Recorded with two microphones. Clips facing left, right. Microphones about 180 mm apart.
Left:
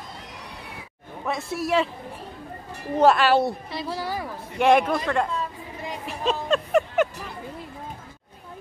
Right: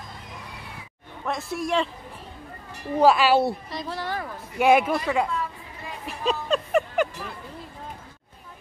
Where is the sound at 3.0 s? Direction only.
Centre (ahead or behind).